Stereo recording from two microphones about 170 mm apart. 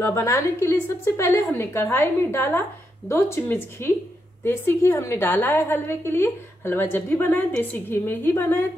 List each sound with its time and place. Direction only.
0.0 s a woman's voice: 15° left (ahead or behind)